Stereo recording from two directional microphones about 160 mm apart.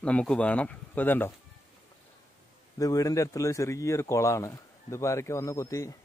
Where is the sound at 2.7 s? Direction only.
20° left (ahead or behind).